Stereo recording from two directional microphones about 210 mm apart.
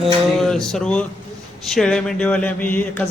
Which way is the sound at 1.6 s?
Centre (ahead or behind).